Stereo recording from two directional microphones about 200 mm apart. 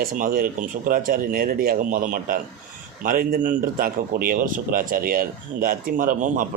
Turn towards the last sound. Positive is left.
turn(degrees=-40)  # may be behind; listen again after turning